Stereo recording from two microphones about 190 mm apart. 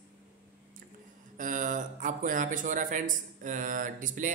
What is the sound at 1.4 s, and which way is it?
Speech, 45° right (ahead or behind).